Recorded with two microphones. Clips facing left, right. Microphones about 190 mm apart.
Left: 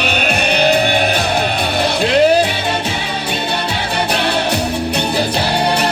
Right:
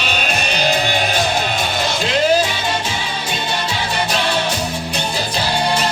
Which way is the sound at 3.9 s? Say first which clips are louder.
Left 3 dB; 60° left (ahead or behind).